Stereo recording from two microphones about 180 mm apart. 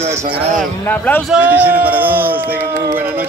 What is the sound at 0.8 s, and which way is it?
Speech, 10° left (ahead or behind).